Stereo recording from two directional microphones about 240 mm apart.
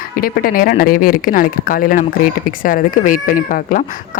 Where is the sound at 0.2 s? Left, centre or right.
Left.